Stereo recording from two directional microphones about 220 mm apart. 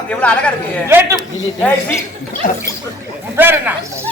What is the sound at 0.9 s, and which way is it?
Speech, 10° right (ahead or behind).